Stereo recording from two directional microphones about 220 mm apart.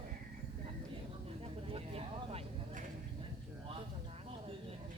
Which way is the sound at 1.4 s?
25° right (ahead or behind).